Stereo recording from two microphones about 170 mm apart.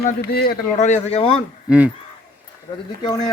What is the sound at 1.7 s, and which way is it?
Speech, 10° right (ahead or behind).